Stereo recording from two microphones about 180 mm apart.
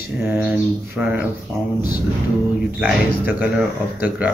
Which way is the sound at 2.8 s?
5° right (ahead or behind).